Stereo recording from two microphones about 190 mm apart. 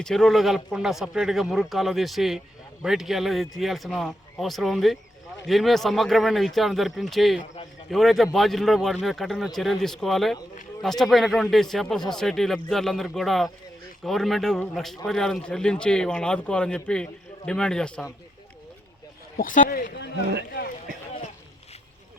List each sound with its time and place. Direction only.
0.0 s speech: centre (ahead or behind)
19.4 s a man's voice: 45° left (ahead or behind)